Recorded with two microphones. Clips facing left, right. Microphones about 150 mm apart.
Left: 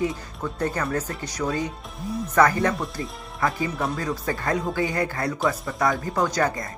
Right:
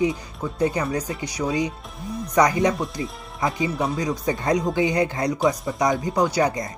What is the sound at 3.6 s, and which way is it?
Speech, centre (ahead or behind).